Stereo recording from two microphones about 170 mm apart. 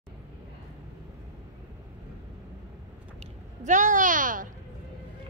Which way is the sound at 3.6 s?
45° right (ahead or behind).